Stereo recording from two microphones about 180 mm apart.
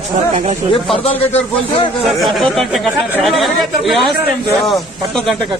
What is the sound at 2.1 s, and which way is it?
A man's voice, centre (ahead or behind).